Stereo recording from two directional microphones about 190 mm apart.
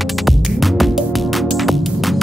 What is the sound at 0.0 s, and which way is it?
Music, centre (ahead or behind).